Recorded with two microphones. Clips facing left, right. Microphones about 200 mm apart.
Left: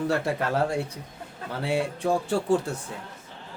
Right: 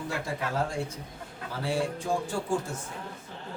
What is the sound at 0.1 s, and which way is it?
A man's voice, 65° left (ahead or behind).